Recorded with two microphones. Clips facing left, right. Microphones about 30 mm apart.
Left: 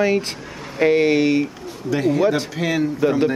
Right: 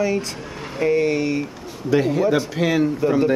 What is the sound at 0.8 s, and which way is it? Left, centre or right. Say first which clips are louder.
Speech: left 3 dB; left.